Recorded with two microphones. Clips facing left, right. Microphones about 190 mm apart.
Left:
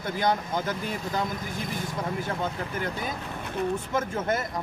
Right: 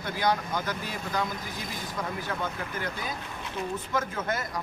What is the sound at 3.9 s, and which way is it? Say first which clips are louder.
Speech: left 1 dB; 25° left (ahead or behind).